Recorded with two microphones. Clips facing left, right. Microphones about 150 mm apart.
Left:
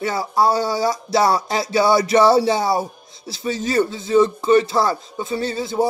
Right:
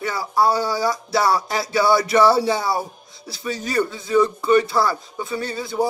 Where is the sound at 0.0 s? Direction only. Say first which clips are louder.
Left 1 dB; 25° left (ahead or behind).